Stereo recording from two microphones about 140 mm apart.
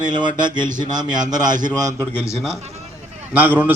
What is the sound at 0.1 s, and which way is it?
A man's voice, 30° right (ahead or behind).